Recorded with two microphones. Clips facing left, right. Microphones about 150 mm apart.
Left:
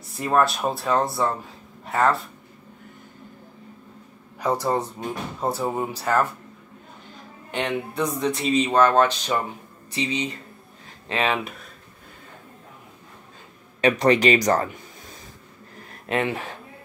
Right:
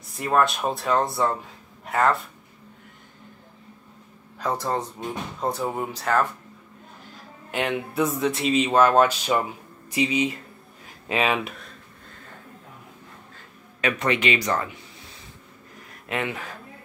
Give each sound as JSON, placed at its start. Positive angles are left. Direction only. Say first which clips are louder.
{"t": 0.2, "sound": "speech", "louder": "left 1 dB", "side_deg": 0}
{"t": 4.4, "sound": "speech", "louder": "left 3 dB", "side_deg": 10}
{"t": 7.5, "sound": "speech", "louder": "right 1 dB", "side_deg": -5}
{"t": 13.7, "sound": "speech", "louder": "left 6 dB", "side_deg": 35}
{"t": 16.1, "sound": "speech", "louder": "left 4 dB", "side_deg": 30}